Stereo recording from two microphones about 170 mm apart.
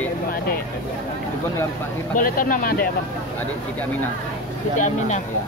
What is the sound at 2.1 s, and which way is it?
Speech, 55° left (ahead or behind).